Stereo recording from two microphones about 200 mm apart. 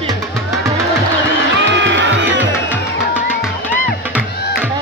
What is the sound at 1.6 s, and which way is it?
Music, 65° right (ahead or behind).